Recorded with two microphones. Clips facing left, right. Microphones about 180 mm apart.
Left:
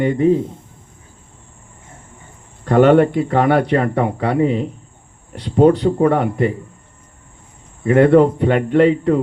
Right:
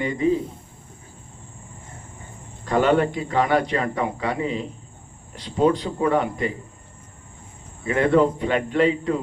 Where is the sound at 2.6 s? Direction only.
60° left (ahead or behind).